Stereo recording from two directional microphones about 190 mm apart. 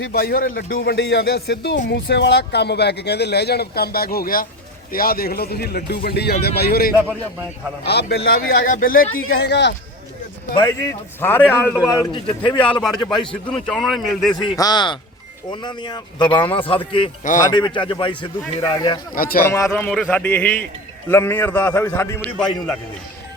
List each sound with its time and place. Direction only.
0.1 s a man's voice: 55° left (ahead or behind)
9.3 s speech: 60° left (ahead or behind)
10.5 s speech: 25° left (ahead or behind)
11.2 s a man's voice: 10° left (ahead or behind)
11.9 s speech: 25° left (ahead or behind)
12.6 s speech: 5° left (ahead or behind)
14.3 s speech: 20° left (ahead or behind)
17.2 s a man's voice: 45° left (ahead or behind)
17.5 s speech: 25° left (ahead or behind)
19.1 s a man's voice: 50° left (ahead or behind)
19.5 s a man's voice: 15° left (ahead or behind)